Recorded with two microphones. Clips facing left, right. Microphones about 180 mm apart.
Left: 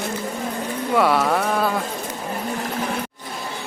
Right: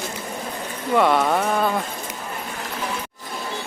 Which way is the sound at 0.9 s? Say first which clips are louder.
Right 1 dB; centre (ahead or behind).